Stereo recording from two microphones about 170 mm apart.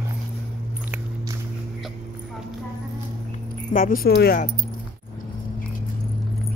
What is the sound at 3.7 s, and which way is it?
Speech, 55° left (ahead or behind).